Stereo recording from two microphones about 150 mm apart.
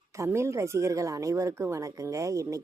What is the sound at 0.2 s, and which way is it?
Speech, 20° right (ahead or behind).